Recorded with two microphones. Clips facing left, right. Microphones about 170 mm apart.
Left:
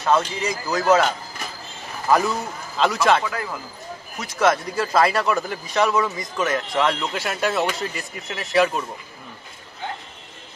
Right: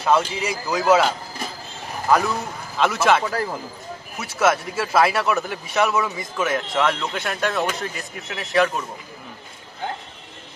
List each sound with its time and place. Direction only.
0.3 s speech: 10° right (ahead or behind)
2.0 s a man's voice: centre (ahead or behind)
3.3 s speech: 35° right (ahead or behind)
4.2 s speech: 5° right (ahead or behind)